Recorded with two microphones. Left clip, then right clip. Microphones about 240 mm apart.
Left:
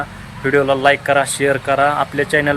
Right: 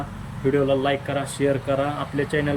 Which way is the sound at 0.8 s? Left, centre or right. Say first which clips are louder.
Left 11 dB; centre.